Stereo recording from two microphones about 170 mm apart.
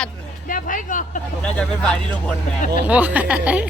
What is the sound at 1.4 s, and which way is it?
Speech, 5° left (ahead or behind).